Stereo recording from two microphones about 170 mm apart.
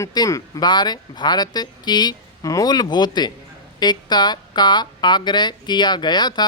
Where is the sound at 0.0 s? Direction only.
20° left (ahead or behind).